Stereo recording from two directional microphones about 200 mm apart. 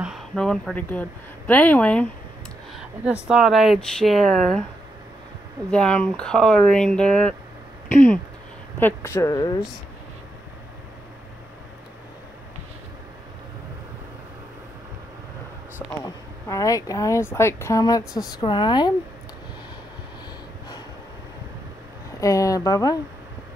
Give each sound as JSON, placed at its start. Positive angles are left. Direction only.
{"t": 0.0, "sound": "speech", "side_deg": 0}
{"t": 3.3, "sound": "speech", "side_deg": 0}
{"t": 5.7, "sound": "speech", "side_deg": 5}
{"t": 8.7, "sound": "speech", "side_deg": 10}
{"t": 15.9, "sound": "a woman's voice", "side_deg": 15}
{"t": 22.2, "sound": "speech", "side_deg": 15}